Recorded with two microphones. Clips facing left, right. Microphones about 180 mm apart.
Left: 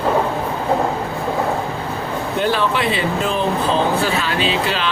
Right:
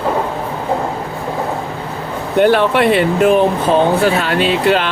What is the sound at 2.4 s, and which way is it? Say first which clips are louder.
Speech: right 8 dB; 60° right (ahead or behind).